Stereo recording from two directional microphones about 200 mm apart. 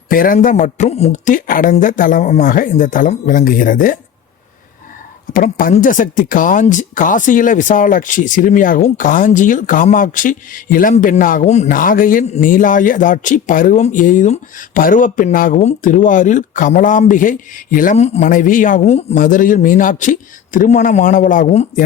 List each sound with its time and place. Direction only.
0.1 s speech: 45° left (ahead or behind)
5.3 s speech: 45° left (ahead or behind)